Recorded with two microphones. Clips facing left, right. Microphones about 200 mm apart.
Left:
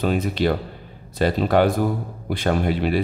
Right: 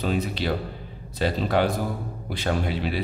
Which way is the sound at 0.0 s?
55° left (ahead or behind).